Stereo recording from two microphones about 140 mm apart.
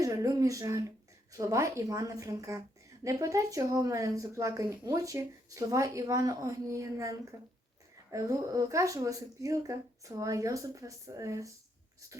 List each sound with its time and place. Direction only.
0.0 s speech: 25° right (ahead or behind)